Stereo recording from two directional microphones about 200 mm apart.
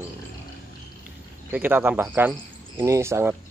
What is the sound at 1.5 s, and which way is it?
Speech, 10° right (ahead or behind).